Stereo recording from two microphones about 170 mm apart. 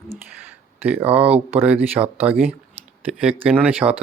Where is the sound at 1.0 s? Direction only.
10° right (ahead or behind).